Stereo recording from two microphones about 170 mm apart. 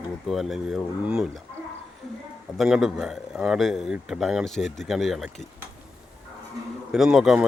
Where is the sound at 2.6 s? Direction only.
5° right (ahead or behind).